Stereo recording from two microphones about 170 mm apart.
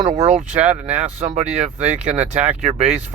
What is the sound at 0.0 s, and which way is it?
Speech, 35° right (ahead or behind).